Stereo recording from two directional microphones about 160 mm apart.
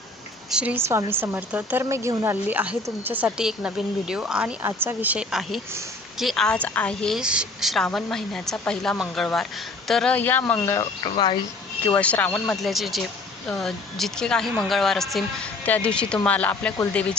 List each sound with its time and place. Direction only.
0.5 s a woman's voice: 10° right (ahead or behind); by 10.8 s 10° left (ahead or behind)
11.0 s speech: 30° left (ahead or behind)
11.9 s a woman's voice: 10° left (ahead or behind)